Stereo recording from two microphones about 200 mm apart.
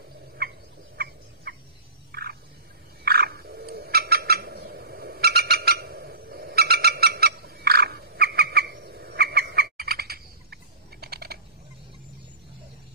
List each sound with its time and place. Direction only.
0.9 s fowl: 55° right (ahead or behind)
3.1 s frog: 50° right (ahead or behind)